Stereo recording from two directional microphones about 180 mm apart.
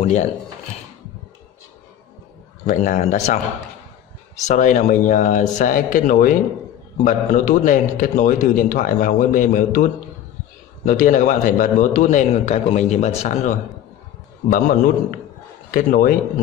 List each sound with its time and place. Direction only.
0.0 s speech: 40° left (ahead or behind)
2.6 s a man's voice: 45° left (ahead or behind)
4.5 s a man's voice: 45° left (ahead or behind)
10.9 s a man's voice: 45° left (ahead or behind)
14.5 s a man's voice: 50° left (ahead or behind)